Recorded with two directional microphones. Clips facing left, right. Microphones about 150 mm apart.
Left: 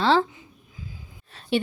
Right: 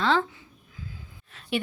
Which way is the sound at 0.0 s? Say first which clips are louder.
Left 4 dB; 35° left (ahead or behind).